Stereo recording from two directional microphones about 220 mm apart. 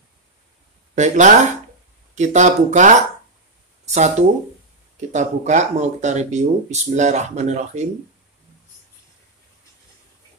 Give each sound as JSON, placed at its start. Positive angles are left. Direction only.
{"t": 0.9, "sound": "speech", "side_deg": -35}
{"t": 5.1, "sound": "speech", "side_deg": -30}